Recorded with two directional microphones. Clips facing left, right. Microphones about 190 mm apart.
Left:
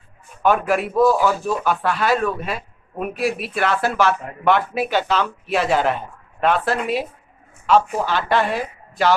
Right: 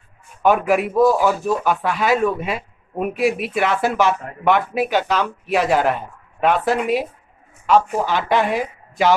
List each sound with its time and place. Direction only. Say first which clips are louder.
0.4 s a man's voice: right 2 dB; 15° right (ahead or behind)